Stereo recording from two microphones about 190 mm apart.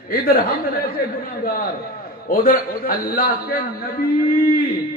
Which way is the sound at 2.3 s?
45° left (ahead or behind).